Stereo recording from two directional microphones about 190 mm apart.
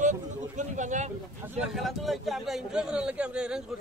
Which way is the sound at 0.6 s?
40° right (ahead or behind).